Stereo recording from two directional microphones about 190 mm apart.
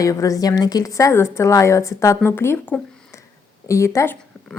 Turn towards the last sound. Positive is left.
turn(degrees=15)  # may be behind; listen again after turning